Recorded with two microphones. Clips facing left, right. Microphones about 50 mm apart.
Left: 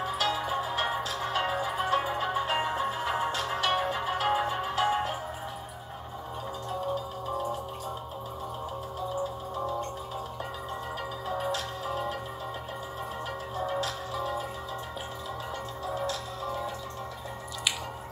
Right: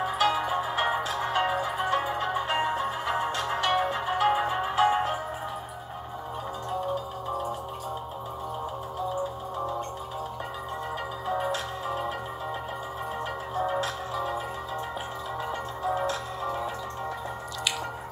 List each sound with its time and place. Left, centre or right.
0.0 s music: centre
11.2 s music: centre
13.6 s music: centre
15.8 s music: right